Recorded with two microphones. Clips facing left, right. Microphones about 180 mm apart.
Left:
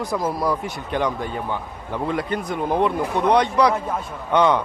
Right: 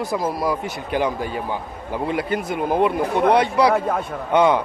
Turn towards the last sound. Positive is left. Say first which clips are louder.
# right 1 dB
turn(degrees=-5)  # may be behind; listen again after turning